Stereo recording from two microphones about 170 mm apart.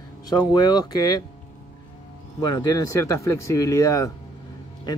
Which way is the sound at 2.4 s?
25° left (ahead or behind).